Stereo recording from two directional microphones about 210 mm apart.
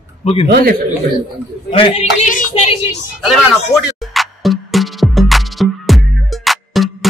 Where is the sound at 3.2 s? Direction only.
Centre (ahead or behind).